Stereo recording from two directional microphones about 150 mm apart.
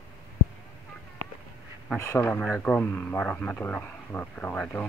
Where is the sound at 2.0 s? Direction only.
15° left (ahead or behind).